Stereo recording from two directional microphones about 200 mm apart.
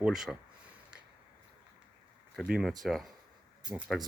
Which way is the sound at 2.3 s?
Centre (ahead or behind).